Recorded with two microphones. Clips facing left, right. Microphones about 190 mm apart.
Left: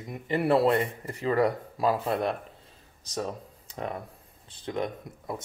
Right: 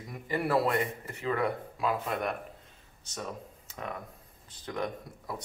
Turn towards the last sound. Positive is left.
turn(degrees=25)  # may be behind; listen again after turning